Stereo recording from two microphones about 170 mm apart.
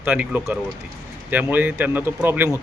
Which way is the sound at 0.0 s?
10° right (ahead or behind).